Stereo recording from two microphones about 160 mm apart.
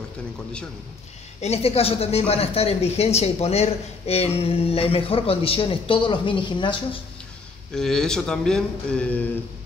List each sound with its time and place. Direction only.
1.4 s speech: 40° left (ahead or behind)
7.7 s speech: 5° left (ahead or behind)